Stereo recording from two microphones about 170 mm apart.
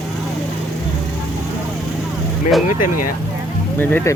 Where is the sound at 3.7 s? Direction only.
10° left (ahead or behind).